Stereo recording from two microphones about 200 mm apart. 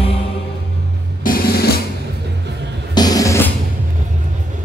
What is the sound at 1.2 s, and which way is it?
Drum, 45° left (ahead or behind).